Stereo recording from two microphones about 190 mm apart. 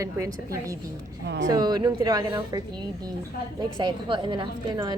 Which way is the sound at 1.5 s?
20° right (ahead or behind).